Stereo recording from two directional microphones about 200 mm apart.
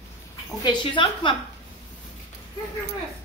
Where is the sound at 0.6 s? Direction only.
25° left (ahead or behind).